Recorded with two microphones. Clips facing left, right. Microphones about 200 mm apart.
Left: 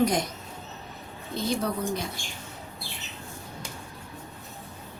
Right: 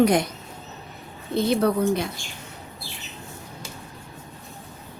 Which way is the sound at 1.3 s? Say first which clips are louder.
Right 8 dB; 65° right (ahead or behind).